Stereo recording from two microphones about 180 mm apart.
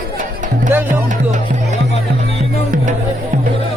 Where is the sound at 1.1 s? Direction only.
45° right (ahead or behind).